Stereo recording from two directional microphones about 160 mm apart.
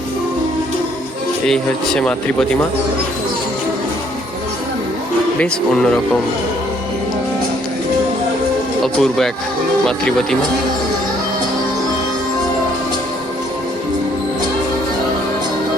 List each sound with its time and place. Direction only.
1.5 s speech: 5° left (ahead or behind)
5.4 s speech: 5° left (ahead or behind)
8.8 s speech: centre (ahead or behind)